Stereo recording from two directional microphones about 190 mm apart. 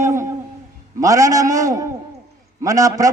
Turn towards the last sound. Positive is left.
turn(degrees=-20)  # may be behind; listen again after turning